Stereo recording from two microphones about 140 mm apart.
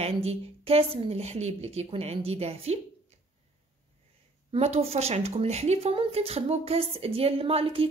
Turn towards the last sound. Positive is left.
turn(degrees=-40)  # may be behind; listen again after turning